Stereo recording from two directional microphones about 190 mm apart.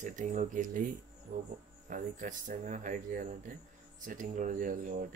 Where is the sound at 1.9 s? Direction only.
40° right (ahead or behind).